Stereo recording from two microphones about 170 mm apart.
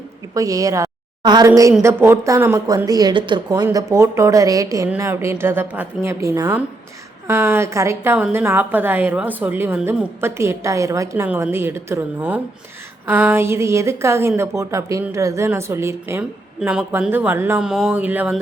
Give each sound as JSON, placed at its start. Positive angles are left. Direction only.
{"t": 0.3, "sound": "a woman's voice", "side_deg": -20}